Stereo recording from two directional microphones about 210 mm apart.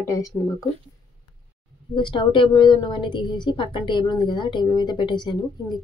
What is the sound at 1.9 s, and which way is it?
Speech, 25° left (ahead or behind).